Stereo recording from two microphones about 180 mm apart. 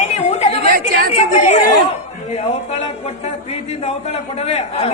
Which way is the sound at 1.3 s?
40° left (ahead or behind).